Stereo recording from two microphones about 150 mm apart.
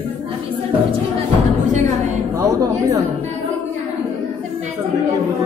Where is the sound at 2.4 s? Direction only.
20° right (ahead or behind).